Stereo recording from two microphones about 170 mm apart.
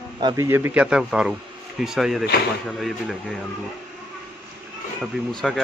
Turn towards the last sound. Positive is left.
turn(degrees=0)  # may be behind; listen again after turning